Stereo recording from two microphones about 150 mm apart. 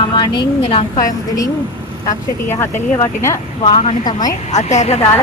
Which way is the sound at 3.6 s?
35° left (ahead or behind).